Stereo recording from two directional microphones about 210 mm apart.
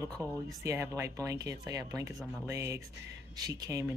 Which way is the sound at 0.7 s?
15° right (ahead or behind).